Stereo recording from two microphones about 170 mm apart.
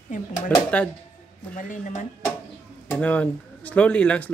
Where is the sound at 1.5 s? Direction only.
50° left (ahead or behind).